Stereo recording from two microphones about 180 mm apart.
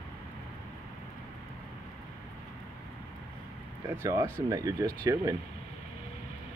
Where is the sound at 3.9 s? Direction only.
15° right (ahead or behind).